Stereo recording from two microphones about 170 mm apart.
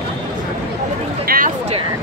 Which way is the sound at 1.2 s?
60° right (ahead or behind).